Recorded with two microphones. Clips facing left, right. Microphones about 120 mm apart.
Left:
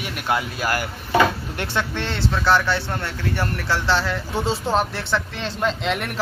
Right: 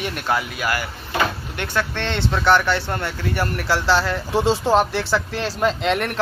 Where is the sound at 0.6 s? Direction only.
40° left (ahead or behind).